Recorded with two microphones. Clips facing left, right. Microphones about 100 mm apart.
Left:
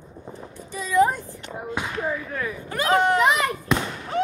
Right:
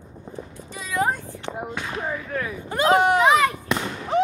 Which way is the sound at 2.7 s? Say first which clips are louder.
Right 5 dB; 25° right (ahead or behind).